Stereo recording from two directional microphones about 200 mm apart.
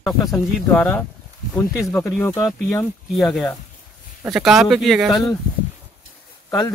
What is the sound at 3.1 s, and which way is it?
Speech, centre (ahead or behind).